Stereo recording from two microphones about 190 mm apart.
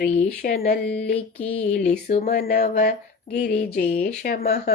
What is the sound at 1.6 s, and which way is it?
Speech, 55° left (ahead or behind).